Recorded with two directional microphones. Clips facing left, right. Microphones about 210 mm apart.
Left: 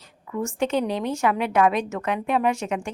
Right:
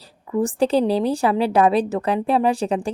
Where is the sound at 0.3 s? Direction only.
35° right (ahead or behind).